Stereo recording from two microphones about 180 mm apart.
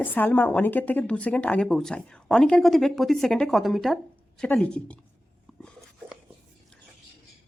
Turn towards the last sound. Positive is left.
turn(degrees=0)  # may be behind; listen again after turning